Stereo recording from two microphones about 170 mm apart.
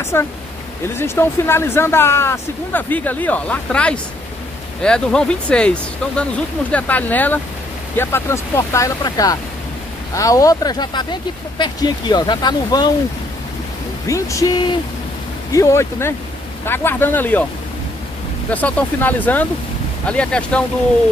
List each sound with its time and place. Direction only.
0.0 s speech: 15° left (ahead or behind)
14.0 s speech: 20° left (ahead or behind)
15.5 s speech: 15° left (ahead or behind)
18.5 s speech: 10° left (ahead or behind)